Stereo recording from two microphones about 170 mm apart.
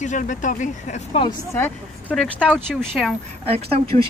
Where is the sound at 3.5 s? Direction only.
35° right (ahead or behind).